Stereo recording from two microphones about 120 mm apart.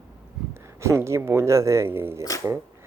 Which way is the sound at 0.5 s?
25° right (ahead or behind).